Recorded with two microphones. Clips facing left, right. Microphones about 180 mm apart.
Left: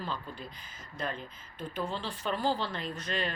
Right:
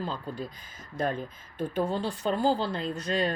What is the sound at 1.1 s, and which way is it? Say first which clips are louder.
Speech: right 7 dB; 50° right (ahead or behind).